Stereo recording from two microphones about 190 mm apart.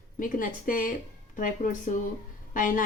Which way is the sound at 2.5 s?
45° left (ahead or behind).